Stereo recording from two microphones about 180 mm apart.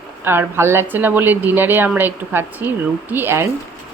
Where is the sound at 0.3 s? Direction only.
15° right (ahead or behind).